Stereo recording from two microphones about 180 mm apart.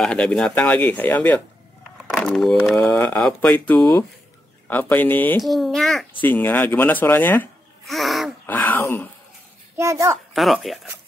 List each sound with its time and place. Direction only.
0.0 s a child's voice: 5° left (ahead or behind)
5.4 s a child's voice: centre (ahead or behind)
7.8 s gasp: centre (ahead or behind)
9.8 s a child's voice: 15° right (ahead or behind)
10.3 s a child's voice: centre (ahead or behind)